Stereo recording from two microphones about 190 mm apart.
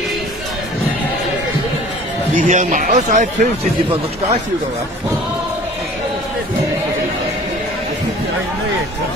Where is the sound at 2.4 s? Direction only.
45° right (ahead or behind).